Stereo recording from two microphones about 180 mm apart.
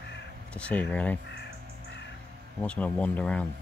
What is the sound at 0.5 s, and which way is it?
Speech, 10° left (ahead or behind).